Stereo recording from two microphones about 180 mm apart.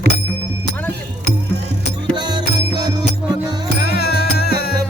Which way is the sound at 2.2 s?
25° right (ahead or behind).